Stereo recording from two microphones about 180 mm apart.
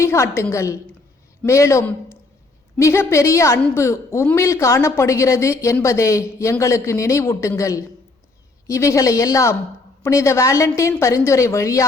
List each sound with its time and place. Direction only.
0.0 s a woman's voice: 15° left (ahead or behind)